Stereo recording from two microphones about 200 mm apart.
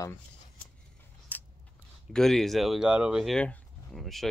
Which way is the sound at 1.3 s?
10° left (ahead or behind).